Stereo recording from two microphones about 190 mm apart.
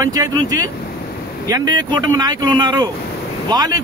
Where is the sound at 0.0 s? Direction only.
15° right (ahead or behind).